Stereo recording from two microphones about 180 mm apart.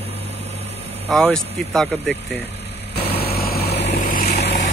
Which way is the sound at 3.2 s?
60° left (ahead or behind).